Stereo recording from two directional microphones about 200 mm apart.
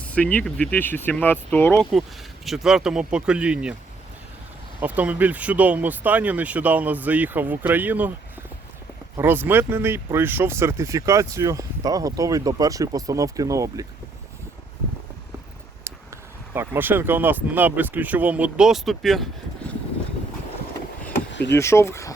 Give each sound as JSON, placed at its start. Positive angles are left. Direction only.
{"t": 0.0, "sound": "speech", "side_deg": 5}
{"t": 4.8, "sound": "speech", "side_deg": -10}
{"t": 9.1, "sound": "speech", "side_deg": -10}
{"t": 16.6, "sound": "speech", "side_deg": -10}
{"t": 21.5, "sound": "speech", "side_deg": 15}